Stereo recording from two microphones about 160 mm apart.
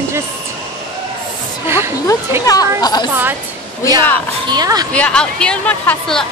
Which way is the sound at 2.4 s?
25° left (ahead or behind).